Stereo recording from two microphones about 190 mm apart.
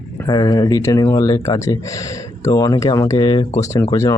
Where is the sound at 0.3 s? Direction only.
20° left (ahead or behind).